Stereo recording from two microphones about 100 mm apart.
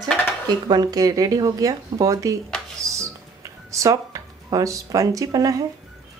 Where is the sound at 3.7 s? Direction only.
35° right (ahead or behind).